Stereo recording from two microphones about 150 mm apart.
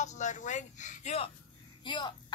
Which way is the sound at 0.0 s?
55° left (ahead or behind).